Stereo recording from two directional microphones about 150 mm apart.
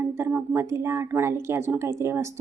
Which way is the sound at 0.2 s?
15° right (ahead or behind).